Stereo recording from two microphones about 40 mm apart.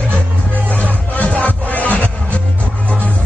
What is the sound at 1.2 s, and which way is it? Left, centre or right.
Music, left.